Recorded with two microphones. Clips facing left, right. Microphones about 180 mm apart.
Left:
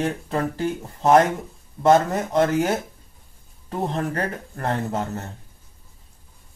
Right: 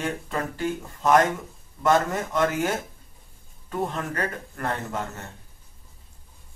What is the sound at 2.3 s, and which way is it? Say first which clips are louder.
Speech: left 5 dB; 35° left (ahead or behind).